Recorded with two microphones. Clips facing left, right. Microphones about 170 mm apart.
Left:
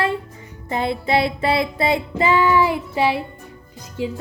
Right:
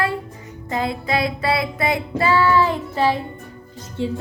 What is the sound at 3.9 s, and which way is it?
Speech, 10° left (ahead or behind).